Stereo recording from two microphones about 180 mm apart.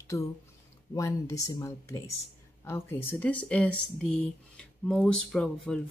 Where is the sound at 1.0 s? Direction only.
15° left (ahead or behind).